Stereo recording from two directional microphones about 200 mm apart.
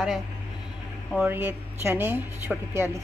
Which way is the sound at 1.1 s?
5° right (ahead or behind).